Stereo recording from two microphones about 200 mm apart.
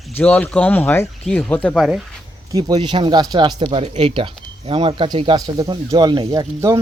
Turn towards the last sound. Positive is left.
turn(degrees=-15)  # may be behind; listen again after turning